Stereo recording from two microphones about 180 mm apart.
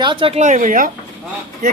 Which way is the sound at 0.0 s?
30° right (ahead or behind).